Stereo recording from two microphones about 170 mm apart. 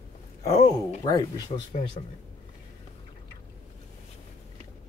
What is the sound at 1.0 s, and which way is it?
Speech, 25° left (ahead or behind).